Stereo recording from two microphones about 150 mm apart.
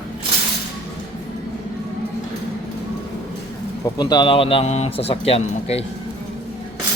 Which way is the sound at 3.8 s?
25° left (ahead or behind).